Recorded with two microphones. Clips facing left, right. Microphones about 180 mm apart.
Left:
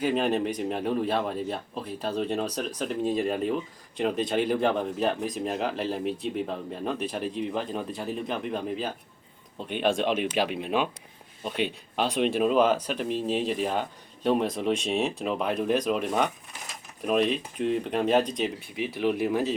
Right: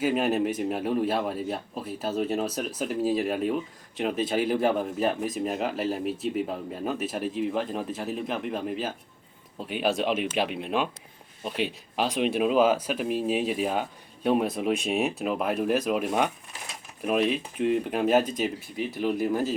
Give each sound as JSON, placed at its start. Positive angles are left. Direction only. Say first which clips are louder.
{"t": 0.0, "sound": "a man's voice", "louder": "right 1 dB", "side_deg": -5}